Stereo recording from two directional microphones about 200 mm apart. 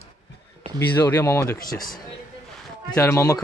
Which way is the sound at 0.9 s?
10° left (ahead or behind).